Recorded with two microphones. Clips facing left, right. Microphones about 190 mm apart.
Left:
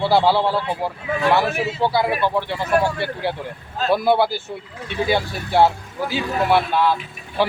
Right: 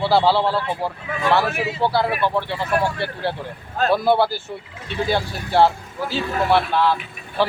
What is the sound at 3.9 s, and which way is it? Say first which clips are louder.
Speech: left 1 dB; 15° left (ahead or behind).